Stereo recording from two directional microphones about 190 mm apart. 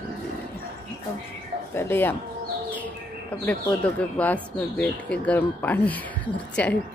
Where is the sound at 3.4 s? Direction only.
5° left (ahead or behind).